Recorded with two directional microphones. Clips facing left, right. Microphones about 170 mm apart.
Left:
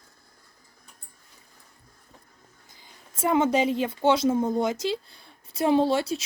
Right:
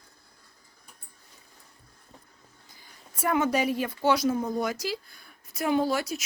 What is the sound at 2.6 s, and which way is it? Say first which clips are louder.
A woman's voice: even; 20° left (ahead or behind).